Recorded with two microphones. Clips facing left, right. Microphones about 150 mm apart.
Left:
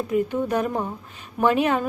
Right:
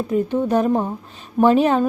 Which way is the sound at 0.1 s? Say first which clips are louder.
Right 4 dB; 30° right (ahead or behind).